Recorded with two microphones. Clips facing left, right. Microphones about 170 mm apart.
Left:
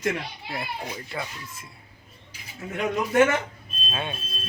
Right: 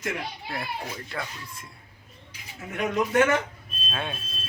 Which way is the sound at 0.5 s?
10° left (ahead or behind).